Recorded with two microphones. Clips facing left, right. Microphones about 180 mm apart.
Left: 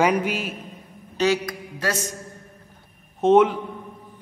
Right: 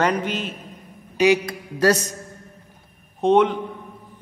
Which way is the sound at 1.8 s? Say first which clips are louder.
Right 9 dB; 40° right (ahead or behind).